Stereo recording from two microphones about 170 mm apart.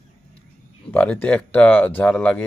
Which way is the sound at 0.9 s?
10° left (ahead or behind).